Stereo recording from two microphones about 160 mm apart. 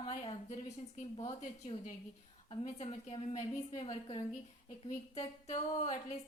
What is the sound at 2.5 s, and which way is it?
A woman's voice, 40° left (ahead or behind).